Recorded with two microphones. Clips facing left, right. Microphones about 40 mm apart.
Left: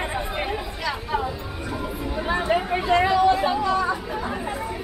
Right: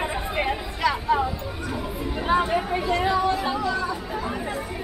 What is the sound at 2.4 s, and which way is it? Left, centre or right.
Chatter, centre.